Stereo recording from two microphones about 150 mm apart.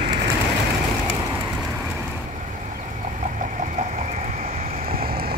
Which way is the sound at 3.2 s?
60° right (ahead or behind).